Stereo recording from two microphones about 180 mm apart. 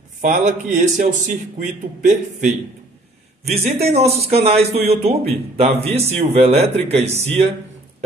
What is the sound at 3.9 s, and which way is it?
A man's voice, 35° right (ahead or behind).